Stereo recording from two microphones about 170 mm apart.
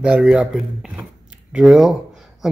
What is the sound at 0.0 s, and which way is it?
Speech, 5° right (ahead or behind).